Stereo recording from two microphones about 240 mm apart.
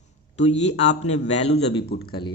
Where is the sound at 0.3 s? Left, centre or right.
Left.